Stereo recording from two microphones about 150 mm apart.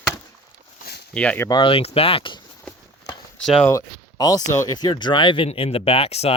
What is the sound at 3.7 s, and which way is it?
Speech, 25° left (ahead or behind).